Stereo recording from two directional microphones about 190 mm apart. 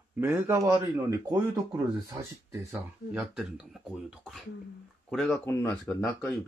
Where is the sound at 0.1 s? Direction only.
10° right (ahead or behind).